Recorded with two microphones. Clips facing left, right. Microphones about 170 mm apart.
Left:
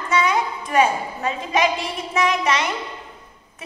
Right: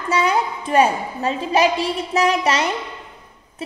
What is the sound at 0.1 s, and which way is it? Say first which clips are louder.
A woman's voice: right 2 dB; 35° right (ahead or behind).